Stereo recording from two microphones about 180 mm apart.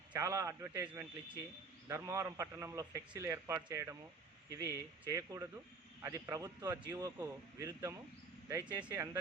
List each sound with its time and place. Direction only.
0.1 s speech: 15° right (ahead or behind)